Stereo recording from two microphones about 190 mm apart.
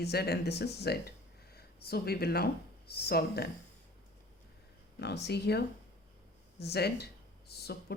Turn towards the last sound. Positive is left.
turn(degrees=55)  # may be behind; listen again after turning